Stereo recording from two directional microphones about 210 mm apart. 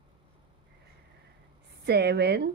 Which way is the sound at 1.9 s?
50° right (ahead or behind).